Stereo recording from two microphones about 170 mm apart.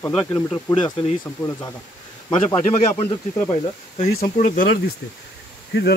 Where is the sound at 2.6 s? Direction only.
40° left (ahead or behind).